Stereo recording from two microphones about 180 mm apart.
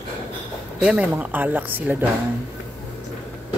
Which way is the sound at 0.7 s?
5° right (ahead or behind).